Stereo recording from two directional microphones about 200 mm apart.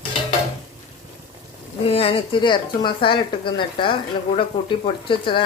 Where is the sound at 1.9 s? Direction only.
30° left (ahead or behind).